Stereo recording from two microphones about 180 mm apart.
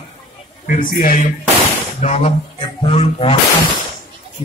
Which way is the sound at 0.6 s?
50° left (ahead or behind).